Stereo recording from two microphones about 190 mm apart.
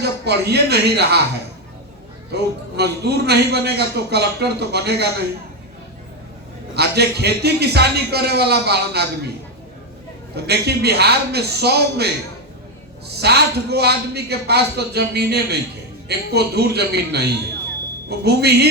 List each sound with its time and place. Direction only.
0.0 s a man's voice: 60° right (ahead or behind)
2.3 s a man's voice: 60° right (ahead or behind)
6.7 s a man's voice: 60° right (ahead or behind)
10.3 s a man's voice: 60° right (ahead or behind)
13.2 s a man's voice: 60° right (ahead or behind)